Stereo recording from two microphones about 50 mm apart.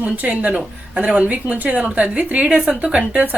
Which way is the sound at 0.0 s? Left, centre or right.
Right.